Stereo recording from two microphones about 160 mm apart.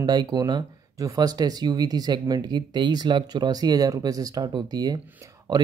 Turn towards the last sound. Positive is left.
turn(degrees=-25)  # may be behind; listen again after turning